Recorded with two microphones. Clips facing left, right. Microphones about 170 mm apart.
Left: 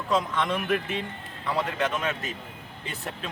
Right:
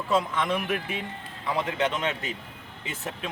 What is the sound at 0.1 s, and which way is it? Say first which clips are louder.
Speech: even; 5° right (ahead or behind).